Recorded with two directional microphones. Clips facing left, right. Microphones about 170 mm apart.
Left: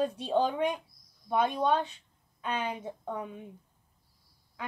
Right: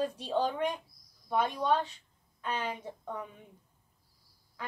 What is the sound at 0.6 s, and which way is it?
Bird, 25° left (ahead or behind).